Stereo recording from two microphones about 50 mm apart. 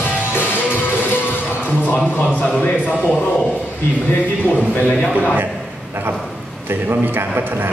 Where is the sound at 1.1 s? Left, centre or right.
Left.